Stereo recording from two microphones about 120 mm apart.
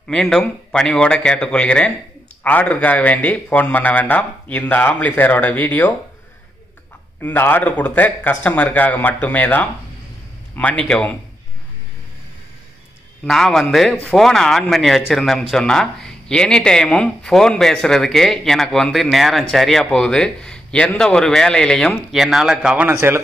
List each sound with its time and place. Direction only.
0.1 s a man's voice: 5° left (ahead or behind)
7.2 s a man's voice: 15° left (ahead or behind)
13.2 s speech: 5° left (ahead or behind)
22.8 s a man's voice: 20° right (ahead or behind)